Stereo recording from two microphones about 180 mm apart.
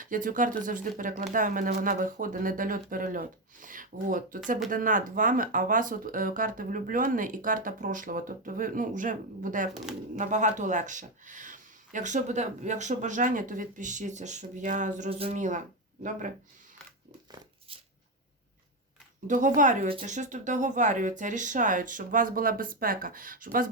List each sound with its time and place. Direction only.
0.0 s speech: 50° right (ahead or behind)
19.5 s speech: 45° right (ahead or behind)